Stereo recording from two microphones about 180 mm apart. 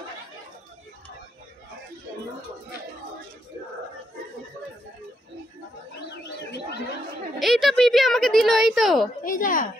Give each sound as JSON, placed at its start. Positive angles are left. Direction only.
{"t": 7.3, "sound": "a woman's voice", "side_deg": 0}
{"t": 9.2, "sound": "a woman's voice", "side_deg": 50}